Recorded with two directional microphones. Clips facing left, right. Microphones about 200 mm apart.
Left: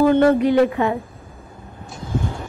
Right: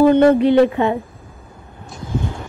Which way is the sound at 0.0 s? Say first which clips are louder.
Right 3 dB; 20° right (ahead or behind).